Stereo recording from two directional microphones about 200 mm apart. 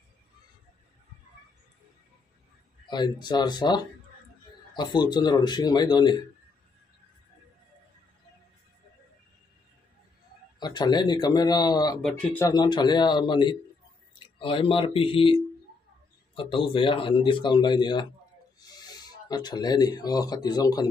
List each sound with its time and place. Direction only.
2.9 s speech: 20° left (ahead or behind)
10.6 s speech: 20° left (ahead or behind)
12.0 s speech: 5° left (ahead or behind)
12.4 s speech: 20° left (ahead or behind)